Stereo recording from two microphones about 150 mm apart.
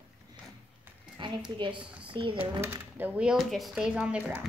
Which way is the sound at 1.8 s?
10° right (ahead or behind).